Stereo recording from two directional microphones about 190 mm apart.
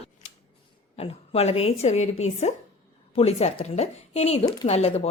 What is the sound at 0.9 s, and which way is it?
Speech, 30° left (ahead or behind).